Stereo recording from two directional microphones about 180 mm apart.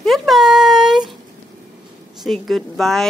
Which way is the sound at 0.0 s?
Centre (ahead or behind).